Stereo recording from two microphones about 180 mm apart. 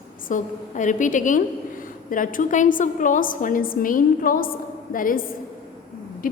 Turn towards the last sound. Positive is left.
turn(degrees=50)  # may be behind; listen again after turning